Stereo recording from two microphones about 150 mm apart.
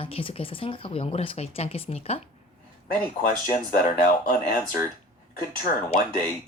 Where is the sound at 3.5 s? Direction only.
60° left (ahead or behind).